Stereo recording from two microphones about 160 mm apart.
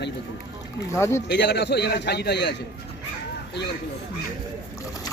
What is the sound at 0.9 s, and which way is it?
Speech, 15° left (ahead or behind).